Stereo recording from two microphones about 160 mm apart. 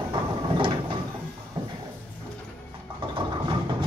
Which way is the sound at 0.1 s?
30° right (ahead or behind).